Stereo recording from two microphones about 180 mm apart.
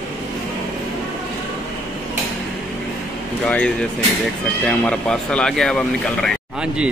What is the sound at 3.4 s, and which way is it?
Speech, 5° left (ahead or behind).